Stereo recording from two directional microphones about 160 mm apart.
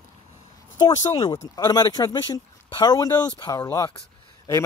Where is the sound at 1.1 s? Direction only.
30° left (ahead or behind).